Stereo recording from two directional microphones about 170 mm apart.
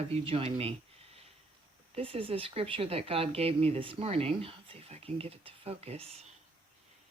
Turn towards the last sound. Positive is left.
turn(degrees=-35)  # may be behind; listen again after turning